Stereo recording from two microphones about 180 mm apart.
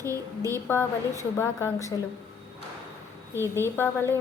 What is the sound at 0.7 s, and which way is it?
A woman's voice, 15° left (ahead or behind).